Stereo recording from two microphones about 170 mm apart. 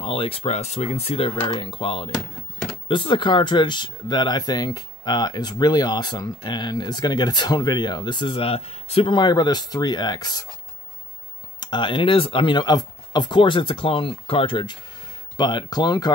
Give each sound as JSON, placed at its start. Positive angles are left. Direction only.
{"t": 0.0, "sound": "speech", "side_deg": 35}
{"t": 11.6, "sound": "speech", "side_deg": 25}